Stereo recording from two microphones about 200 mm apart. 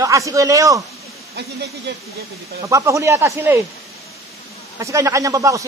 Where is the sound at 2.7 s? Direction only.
15° right (ahead or behind).